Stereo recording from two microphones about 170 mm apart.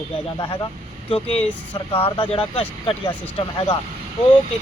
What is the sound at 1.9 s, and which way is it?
Speech, 30° left (ahead or behind).